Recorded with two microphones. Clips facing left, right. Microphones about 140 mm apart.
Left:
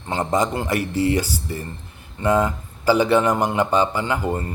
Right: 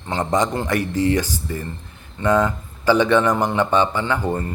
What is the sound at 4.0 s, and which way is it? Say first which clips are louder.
Speech: right 1 dB; 10° left (ahead or behind).